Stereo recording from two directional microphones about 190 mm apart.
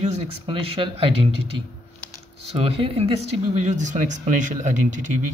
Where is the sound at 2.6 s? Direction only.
30° right (ahead or behind).